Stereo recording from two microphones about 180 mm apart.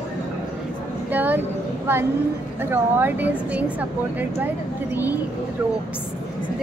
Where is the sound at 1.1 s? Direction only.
10° right (ahead or behind).